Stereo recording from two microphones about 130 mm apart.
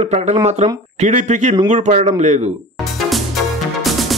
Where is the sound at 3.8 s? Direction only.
Centre (ahead or behind).